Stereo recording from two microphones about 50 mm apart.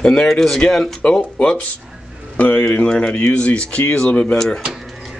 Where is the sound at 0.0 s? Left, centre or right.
Centre.